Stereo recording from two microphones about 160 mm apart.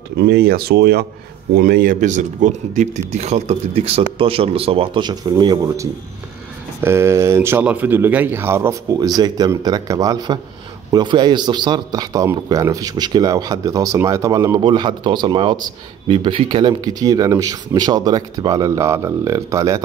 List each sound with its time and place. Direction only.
0.2 s speech: 75° right (ahead or behind)
1.5 s speech: 75° right (ahead or behind)
2.0 s speech: 50° right (ahead or behind); by 19.8 s 20° right (ahead or behind)